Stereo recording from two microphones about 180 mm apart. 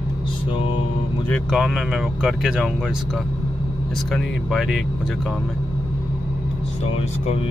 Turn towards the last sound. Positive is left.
turn(degrees=35)  # may be behind; listen again after turning